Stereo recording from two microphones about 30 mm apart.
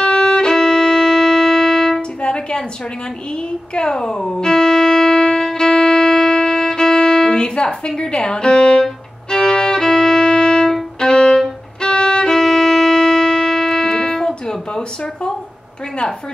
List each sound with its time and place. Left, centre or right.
0.0 s violin: left; by 2.0 s centre
2.0 s music: left
3.7 s music: left
9.4 s violin: left
12.4 s music: centre